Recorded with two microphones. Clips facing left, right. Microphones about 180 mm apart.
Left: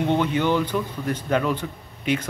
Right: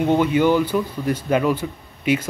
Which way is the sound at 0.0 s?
10° right (ahead or behind).